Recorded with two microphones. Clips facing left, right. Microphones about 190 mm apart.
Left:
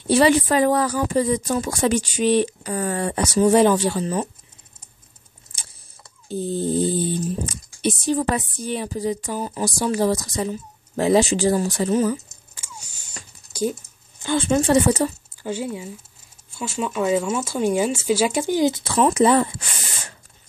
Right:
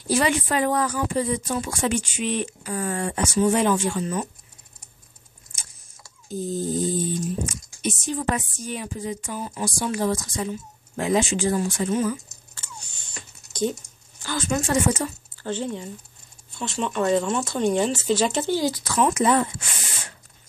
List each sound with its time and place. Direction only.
0.0 s speech: 30° left (ahead or behind)
6.2 s speech: 30° left (ahead or behind)
12.5 s a sound: 10° left (ahead or behind)
14.2 s speech: 30° left (ahead or behind)
15.4 s speech: 10° left (ahead or behind); by 19.4 s 30° left (ahead or behind)